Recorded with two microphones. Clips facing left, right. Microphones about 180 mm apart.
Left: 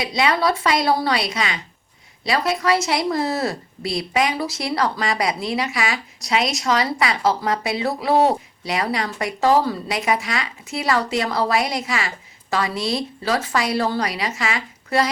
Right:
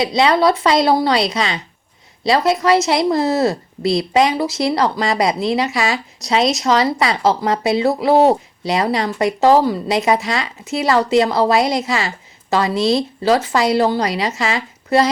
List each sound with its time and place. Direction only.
0.0 s a woman's voice: 25° right (ahead or behind)